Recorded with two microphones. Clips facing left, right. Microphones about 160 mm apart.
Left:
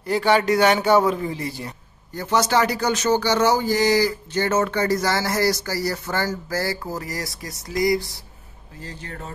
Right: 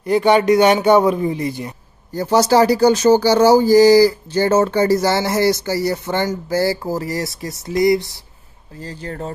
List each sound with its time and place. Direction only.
0.0 s speech: 20° right (ahead or behind)
2.1 s speech: 35° right (ahead or behind)
8.8 s speech: 35° right (ahead or behind)